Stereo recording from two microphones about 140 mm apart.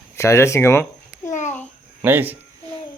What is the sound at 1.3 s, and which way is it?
Babbling, 60° left (ahead or behind).